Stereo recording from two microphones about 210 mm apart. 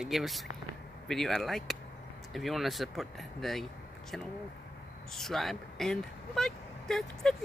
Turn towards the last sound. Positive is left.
turn(degrees=0)  # may be behind; listen again after turning